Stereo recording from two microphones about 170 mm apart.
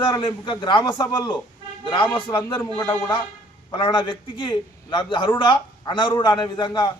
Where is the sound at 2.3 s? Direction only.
15° left (ahead or behind).